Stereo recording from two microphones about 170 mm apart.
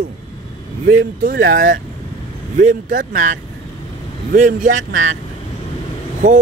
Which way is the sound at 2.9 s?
65° right (ahead or behind).